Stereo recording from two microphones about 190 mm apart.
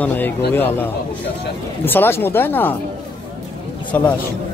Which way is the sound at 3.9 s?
10° left (ahead or behind).